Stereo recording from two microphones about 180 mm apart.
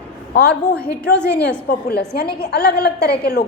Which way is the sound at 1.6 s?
65° left (ahead or behind).